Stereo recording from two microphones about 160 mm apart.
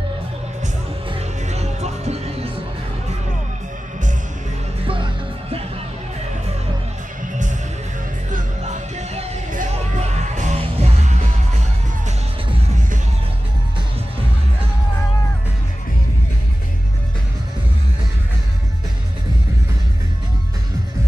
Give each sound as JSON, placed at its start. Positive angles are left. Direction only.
{"t": 1.5, "sound": "music", "side_deg": -45}
{"t": 4.8, "sound": "music", "side_deg": -35}
{"t": 8.3, "sound": "music", "side_deg": -50}